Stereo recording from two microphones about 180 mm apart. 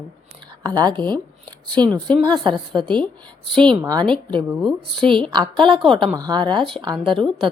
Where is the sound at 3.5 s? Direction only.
25° right (ahead or behind).